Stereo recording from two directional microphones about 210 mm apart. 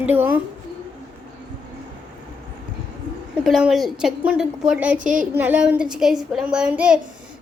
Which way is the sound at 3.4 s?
Centre (ahead or behind).